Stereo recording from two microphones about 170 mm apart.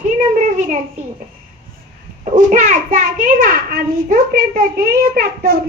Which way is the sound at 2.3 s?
50° right (ahead or behind).